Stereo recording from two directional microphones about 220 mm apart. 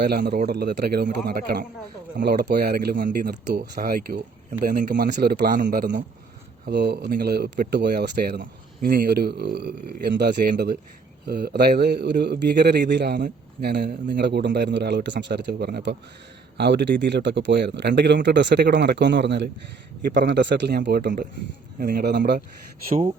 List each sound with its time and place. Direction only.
0.0 s a man's voice: 45° right (ahead or behind)